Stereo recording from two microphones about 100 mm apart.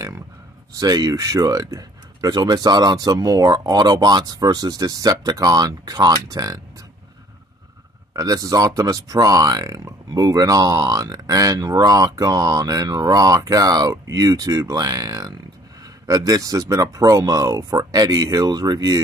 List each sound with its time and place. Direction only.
0.7 s speech: 45° right (ahead or behind)
8.1 s speech: 35° right (ahead or behind)